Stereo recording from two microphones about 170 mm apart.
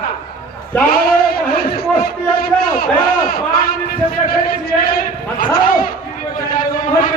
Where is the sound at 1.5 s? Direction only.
65° left (ahead or behind).